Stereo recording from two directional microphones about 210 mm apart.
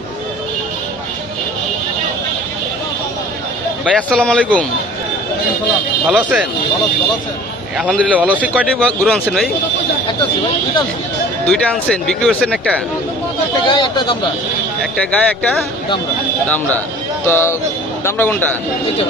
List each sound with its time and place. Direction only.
3.9 s speech: 5° left (ahead or behind)
6.0 s speech: 5° right (ahead or behind)
7.7 s speech: centre (ahead or behind)
11.4 s speech: 5° left (ahead or behind)
13.7 s speech: 20° left (ahead or behind)
15.0 s a man's voice: 5° left (ahead or behind)